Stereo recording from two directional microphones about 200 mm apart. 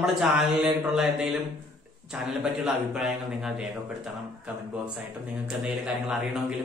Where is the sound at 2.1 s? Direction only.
5° right (ahead or behind).